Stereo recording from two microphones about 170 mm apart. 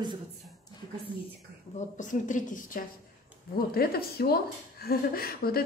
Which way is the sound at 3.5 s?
65° left (ahead or behind).